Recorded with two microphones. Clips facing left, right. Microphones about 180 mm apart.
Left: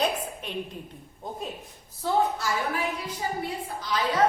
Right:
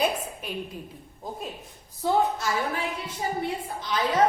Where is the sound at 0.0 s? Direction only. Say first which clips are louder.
Right 1 dB; 10° right (ahead or behind).